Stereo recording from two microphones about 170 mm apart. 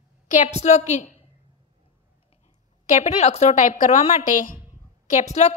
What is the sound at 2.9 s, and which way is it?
A woman's voice, 45° left (ahead or behind).